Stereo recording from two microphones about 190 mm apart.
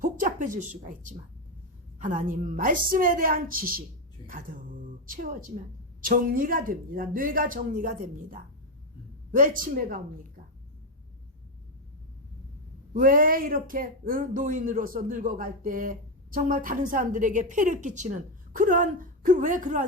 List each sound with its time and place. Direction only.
0.0 s a woman's voice: 45° right (ahead or behind)
12.9 s speech: 45° right (ahead or behind)